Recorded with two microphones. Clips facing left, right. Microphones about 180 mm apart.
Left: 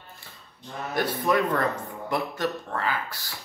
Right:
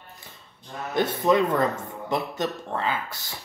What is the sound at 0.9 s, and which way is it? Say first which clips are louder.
Speech: right 3 dB; 20° right (ahead or behind).